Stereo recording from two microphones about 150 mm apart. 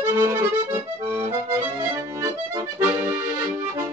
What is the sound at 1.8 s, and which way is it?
Accordion, 20° right (ahead or behind).